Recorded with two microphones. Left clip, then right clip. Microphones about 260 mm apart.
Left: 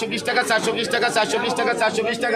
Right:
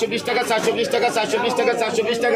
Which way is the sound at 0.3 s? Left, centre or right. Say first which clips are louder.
Even; left.